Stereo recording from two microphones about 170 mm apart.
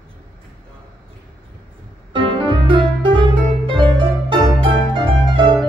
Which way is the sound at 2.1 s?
30° right (ahead or behind).